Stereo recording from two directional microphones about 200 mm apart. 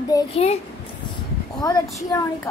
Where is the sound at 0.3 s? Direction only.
30° left (ahead or behind).